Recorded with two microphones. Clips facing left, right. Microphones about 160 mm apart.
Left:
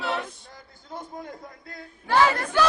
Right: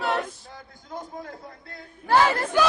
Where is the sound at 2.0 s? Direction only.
35° right (ahead or behind).